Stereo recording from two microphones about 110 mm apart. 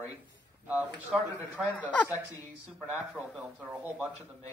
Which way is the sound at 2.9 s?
10° right (ahead or behind).